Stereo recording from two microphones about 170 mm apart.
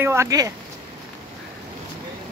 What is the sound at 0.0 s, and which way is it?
Speech, 15° right (ahead or behind).